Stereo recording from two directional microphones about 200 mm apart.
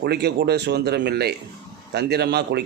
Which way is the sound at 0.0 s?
55° right (ahead or behind).